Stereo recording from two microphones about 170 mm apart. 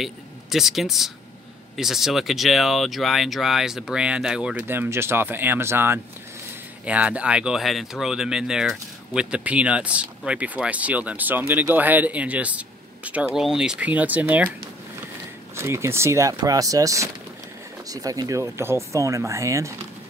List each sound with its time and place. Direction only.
0.0 s speech: centre (ahead or behind)
15.5 s speech: 15° right (ahead or behind)